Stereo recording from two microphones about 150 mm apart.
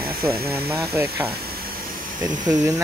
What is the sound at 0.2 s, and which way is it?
Speech, 15° right (ahead or behind).